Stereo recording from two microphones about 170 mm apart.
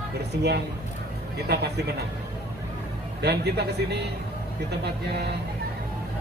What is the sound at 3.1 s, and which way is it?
Speech, 75° right (ahead or behind).